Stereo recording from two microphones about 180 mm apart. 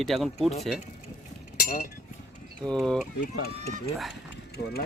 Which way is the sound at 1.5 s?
55° left (ahead or behind).